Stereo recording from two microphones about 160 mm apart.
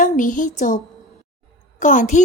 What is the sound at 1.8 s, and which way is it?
Speech, 50° left (ahead or behind).